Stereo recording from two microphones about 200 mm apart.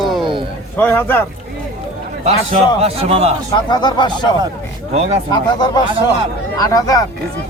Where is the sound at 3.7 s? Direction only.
20° left (ahead or behind).